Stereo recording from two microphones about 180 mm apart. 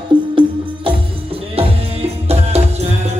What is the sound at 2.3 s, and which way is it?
Music, 35° right (ahead or behind).